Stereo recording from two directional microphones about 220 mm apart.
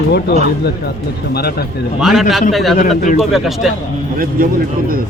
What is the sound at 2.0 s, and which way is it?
Speech, centre (ahead or behind).